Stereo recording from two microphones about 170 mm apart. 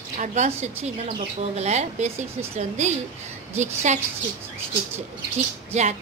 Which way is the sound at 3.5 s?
45° right (ahead or behind).